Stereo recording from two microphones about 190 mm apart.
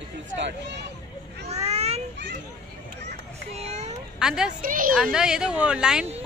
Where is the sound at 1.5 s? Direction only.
35° right (ahead or behind).